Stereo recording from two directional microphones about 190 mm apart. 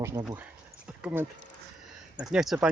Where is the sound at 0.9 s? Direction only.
5° right (ahead or behind).